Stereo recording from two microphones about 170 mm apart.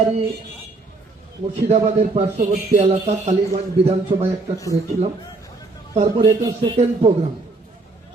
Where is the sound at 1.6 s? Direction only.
40° right (ahead or behind).